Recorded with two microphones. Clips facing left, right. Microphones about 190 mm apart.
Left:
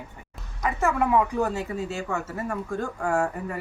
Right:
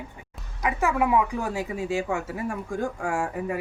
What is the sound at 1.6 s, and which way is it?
Speech, 15° right (ahead or behind).